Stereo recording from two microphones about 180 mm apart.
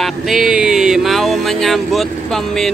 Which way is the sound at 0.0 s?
Centre (ahead or behind).